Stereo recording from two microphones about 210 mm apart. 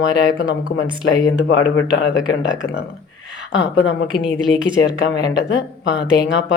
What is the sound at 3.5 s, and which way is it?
Speech, 60° left (ahead or behind).